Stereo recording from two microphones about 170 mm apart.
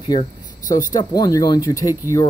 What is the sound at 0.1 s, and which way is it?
Speech, 25° left (ahead or behind).